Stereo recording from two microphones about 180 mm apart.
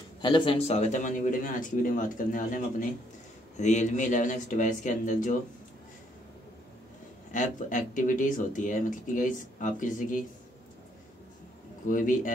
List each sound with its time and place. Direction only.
0.2 s speech: 30° left (ahead or behind); by 5.3 s 45° left (ahead or behind)
7.3 s speech: 45° left (ahead or behind)
11.9 s speech: 45° left (ahead or behind)